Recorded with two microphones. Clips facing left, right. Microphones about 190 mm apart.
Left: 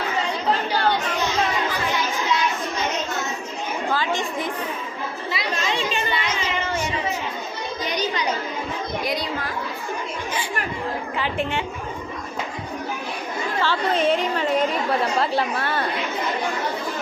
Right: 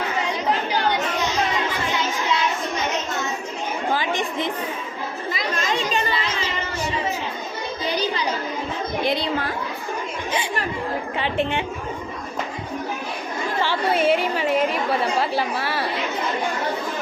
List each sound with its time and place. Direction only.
0.7 s chatter: 20° right (ahead or behind)
3.9 s a woman's voice: 15° right (ahead or behind)
5.3 s chatter: 45° right (ahead or behind)
7.9 s music: 30° right (ahead or behind)
9.0 s chatter: 30° right (ahead or behind)
11.2 s speech: 20° right (ahead or behind)
13.6 s a woman's voice: 10° right (ahead or behind)